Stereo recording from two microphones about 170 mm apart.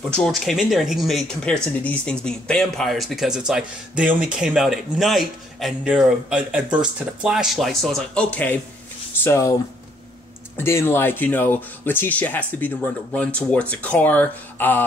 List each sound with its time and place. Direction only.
0.1 s speech: centre (ahead or behind)
10.6 s speech: 15° left (ahead or behind)